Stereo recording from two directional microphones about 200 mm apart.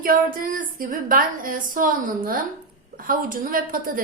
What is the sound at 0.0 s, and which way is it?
A woman's voice, 45° right (ahead or behind).